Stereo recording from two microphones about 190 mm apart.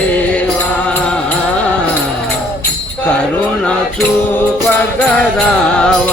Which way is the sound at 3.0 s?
5° left (ahead or behind).